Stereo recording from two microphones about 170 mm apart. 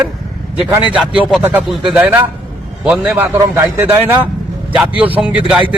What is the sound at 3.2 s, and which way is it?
Speech, 20° right (ahead or behind).